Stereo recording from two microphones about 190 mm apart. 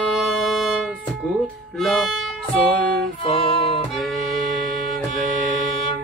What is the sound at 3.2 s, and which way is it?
Music, 30° left (ahead or behind).